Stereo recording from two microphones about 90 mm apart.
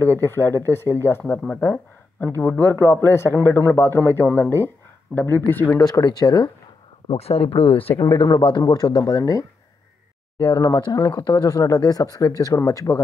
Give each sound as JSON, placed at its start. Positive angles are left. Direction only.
{"t": 0.0, "sound": "speech", "side_deg": 25}
{"t": 5.8, "sound": "speech", "side_deg": 45}
{"t": 7.1, "sound": "speech", "side_deg": 90}
{"t": 8.3, "sound": "speech", "side_deg": 55}
{"t": 10.8, "sound": "speech", "side_deg": 50}